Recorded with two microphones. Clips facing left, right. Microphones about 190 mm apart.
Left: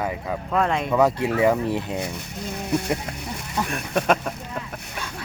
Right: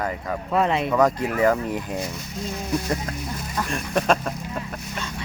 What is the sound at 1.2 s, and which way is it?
Speech, 25° left (ahead or behind).